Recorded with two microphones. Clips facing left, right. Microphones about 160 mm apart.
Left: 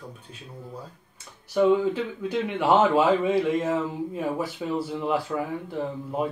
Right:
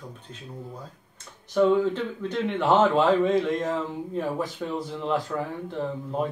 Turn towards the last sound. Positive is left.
turn(degrees=5)  # may be behind; listen again after turning